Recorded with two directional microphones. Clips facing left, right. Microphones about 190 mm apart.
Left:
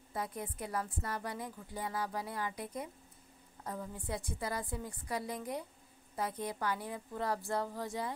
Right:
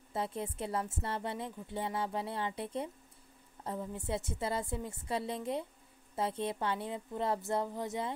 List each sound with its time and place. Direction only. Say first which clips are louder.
0.1 s a woman's voice: right 3 dB; 25° right (ahead or behind)